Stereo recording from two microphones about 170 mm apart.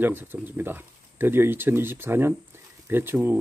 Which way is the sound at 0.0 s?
10° right (ahead or behind).